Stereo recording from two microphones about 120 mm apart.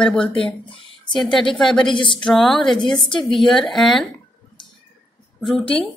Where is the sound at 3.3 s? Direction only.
Centre (ahead or behind).